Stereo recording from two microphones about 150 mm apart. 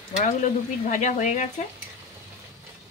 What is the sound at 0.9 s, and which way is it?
Speech, 55° left (ahead or behind).